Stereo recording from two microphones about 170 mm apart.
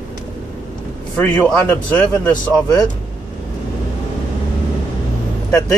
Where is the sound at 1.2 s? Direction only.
10° left (ahead or behind).